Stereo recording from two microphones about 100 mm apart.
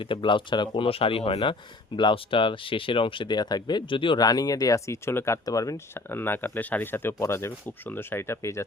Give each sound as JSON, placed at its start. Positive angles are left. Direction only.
{"t": 0.0, "sound": "speech", "side_deg": 55}